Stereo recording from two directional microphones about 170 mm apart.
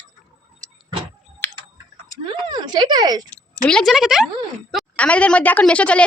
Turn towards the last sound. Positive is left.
turn(degrees=5)  # may be behind; listen again after turning